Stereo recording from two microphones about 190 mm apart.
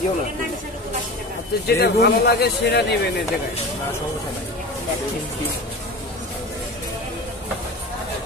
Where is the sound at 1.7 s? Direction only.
55° left (ahead or behind).